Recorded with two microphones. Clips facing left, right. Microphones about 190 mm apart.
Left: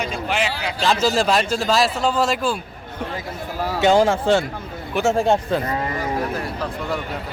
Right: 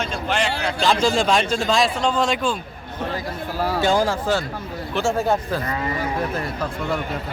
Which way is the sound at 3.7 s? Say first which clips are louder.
Left 5 dB; 20° left (ahead or behind).